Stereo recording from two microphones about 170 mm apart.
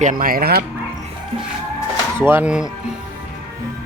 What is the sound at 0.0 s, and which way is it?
Speech, 55° right (ahead or behind).